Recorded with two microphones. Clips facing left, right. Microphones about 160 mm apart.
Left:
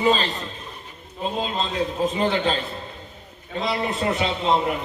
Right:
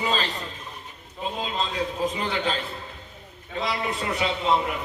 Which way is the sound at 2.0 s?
25° left (ahead or behind).